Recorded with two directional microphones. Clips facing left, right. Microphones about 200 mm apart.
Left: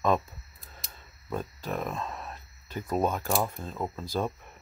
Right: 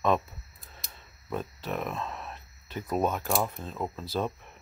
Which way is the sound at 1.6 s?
5° right (ahead or behind).